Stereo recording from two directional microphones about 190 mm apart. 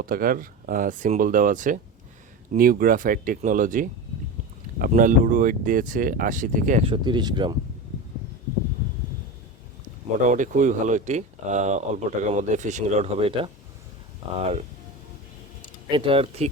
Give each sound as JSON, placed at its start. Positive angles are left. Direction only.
{"t": 0.0, "sound": "speech", "side_deg": -50}
{"t": 6.8, "sound": "speech", "side_deg": -25}
{"t": 10.2, "sound": "speech", "side_deg": -45}
{"t": 15.9, "sound": "speech", "side_deg": -30}